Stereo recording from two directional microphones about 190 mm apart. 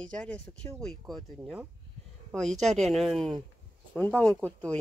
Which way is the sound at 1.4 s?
10° right (ahead or behind).